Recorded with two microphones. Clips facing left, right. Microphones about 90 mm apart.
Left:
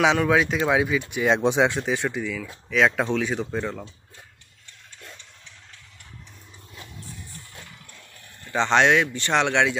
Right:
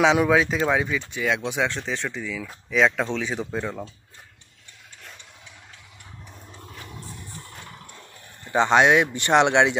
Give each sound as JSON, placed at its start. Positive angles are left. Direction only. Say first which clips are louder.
{"t": 0.3, "sound": "speech", "louder": "even", "side_deg": 0}
{"t": 1.2, "sound": "speech", "louder": "left 5 dB", "side_deg": 30}
{"t": 1.7, "sound": "speech", "louder": "left 4 dB", "side_deg": 10}
{"t": 2.3, "sound": "speech", "louder": "even", "side_deg": 0}
{"t": 8.5, "sound": "speech", "louder": "right 2 dB", "side_deg": -15}